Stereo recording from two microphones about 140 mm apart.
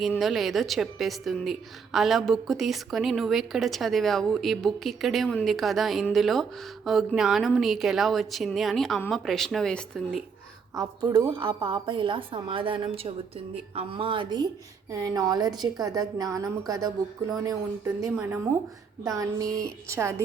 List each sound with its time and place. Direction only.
0.2 s a woman's voice: centre (ahead or behind)
10.8 s a woman's voice: 25° right (ahead or behind)